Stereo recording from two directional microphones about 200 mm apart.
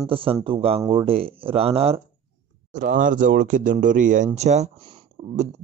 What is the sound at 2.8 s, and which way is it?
A man's voice, 40° right (ahead or behind).